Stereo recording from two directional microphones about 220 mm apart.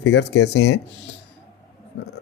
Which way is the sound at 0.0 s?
50° left (ahead or behind).